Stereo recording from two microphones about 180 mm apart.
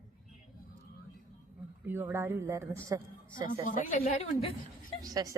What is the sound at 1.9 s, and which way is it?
Speech, 10° right (ahead or behind).